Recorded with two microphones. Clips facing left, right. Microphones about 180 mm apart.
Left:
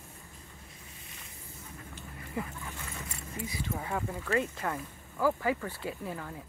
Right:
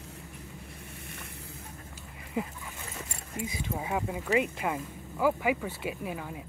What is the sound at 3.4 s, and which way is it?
Speech, 15° right (ahead or behind).